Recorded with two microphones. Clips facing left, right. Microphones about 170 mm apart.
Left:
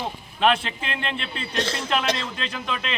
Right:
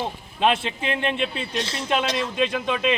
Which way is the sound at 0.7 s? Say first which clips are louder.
Right 6 dB; 15° right (ahead or behind).